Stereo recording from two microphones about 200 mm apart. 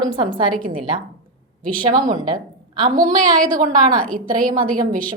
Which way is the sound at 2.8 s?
40° right (ahead or behind).